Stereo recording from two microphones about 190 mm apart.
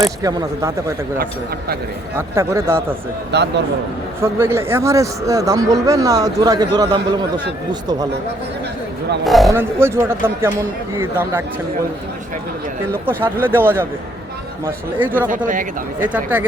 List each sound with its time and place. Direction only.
0.2 s speech: 20° right (ahead or behind)
1.2 s a man's voice: 55° right (ahead or behind)
2.1 s speech: 15° right (ahead or behind)
3.3 s a man's voice: 65° right (ahead or behind)
4.2 s speech: 15° right (ahead or behind)
9.2 s speech: centre (ahead or behind)
9.5 s speech: 15° right (ahead or behind)
13.1 s speech: 10° right (ahead or behind)